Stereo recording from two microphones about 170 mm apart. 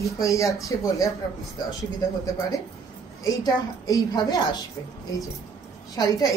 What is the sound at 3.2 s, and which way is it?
A woman's voice, 20° left (ahead or behind).